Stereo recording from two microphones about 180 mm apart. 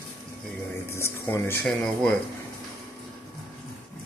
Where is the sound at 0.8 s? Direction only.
15° left (ahead or behind).